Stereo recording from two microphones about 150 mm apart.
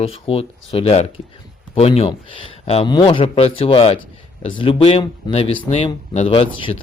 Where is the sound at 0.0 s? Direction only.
40° left (ahead or behind).